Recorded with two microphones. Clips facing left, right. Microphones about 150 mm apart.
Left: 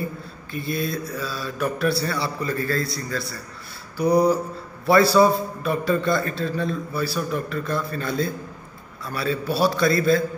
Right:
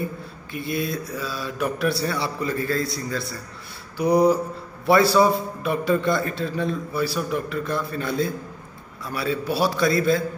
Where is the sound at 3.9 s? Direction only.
20° right (ahead or behind).